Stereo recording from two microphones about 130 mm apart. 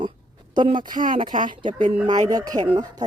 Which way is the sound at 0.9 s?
90° right.